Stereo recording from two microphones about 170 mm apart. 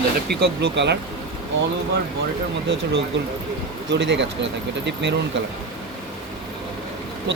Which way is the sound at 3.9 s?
90° right.